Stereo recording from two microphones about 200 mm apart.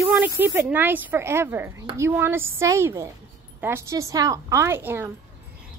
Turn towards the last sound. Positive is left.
turn(degrees=-10)  # may be behind; listen again after turning